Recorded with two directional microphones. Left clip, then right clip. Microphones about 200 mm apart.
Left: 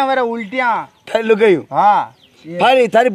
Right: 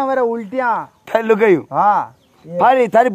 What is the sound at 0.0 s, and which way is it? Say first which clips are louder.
Speech: left 1 dB; 10° left (ahead or behind).